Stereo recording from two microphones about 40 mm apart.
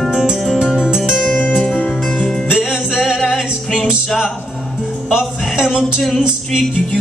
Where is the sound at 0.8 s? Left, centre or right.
Right.